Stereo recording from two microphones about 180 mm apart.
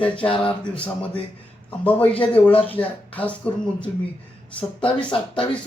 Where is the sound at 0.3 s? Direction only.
30° left (ahead or behind).